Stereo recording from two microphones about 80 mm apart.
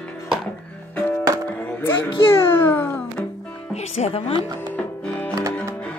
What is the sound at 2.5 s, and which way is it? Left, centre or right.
Babbling, left.